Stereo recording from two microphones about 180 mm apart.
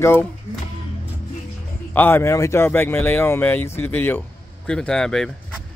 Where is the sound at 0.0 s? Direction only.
15° left (ahead or behind).